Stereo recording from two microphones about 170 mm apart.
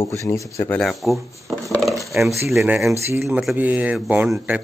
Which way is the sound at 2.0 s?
Centre (ahead or behind).